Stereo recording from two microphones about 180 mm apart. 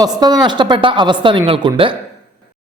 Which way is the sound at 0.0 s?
20° right (ahead or behind).